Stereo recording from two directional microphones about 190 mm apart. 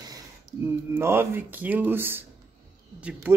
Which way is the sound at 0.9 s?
10° right (ahead or behind).